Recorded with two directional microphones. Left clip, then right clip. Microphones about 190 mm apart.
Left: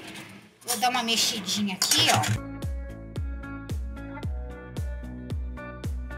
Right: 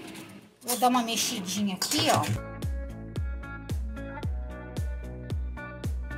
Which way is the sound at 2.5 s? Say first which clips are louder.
Left 1 dB; centre (ahead or behind).